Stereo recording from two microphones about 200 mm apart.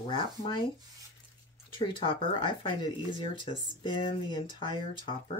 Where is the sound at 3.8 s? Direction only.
25° left (ahead or behind).